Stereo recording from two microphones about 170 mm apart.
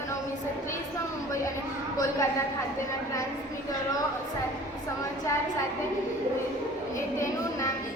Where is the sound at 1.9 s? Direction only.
15° left (ahead or behind).